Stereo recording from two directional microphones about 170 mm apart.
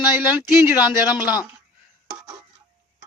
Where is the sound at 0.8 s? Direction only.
5° right (ahead or behind).